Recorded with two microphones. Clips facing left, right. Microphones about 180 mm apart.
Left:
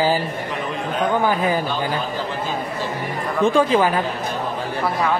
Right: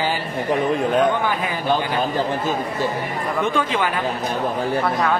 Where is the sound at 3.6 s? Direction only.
35° left (ahead or behind).